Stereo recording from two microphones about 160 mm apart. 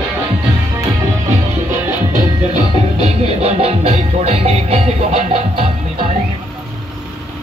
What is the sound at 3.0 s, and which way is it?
Music, 40° right (ahead or behind).